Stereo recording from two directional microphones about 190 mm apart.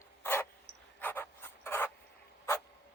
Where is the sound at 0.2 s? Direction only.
10° left (ahead or behind).